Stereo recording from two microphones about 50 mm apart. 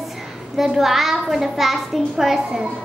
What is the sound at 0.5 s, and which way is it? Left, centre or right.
A child's voice, centre.